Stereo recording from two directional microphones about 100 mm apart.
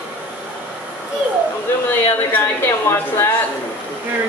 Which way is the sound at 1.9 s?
20° left (ahead or behind).